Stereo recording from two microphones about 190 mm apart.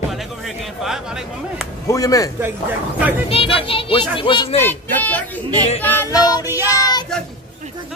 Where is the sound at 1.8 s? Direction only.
20° left (ahead or behind).